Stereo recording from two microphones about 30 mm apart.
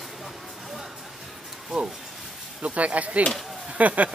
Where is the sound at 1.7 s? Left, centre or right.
Centre.